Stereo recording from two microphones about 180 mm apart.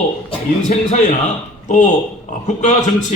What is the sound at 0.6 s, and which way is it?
Speech, 45° left (ahead or behind).